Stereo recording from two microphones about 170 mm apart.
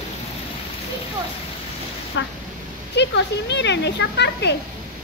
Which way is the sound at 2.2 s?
90° left.